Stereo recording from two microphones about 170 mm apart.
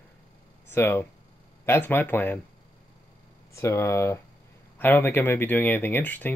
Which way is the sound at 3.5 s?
15° left (ahead or behind).